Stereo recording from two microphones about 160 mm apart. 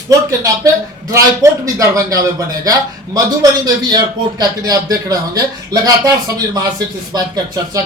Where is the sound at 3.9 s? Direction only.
25° right (ahead or behind).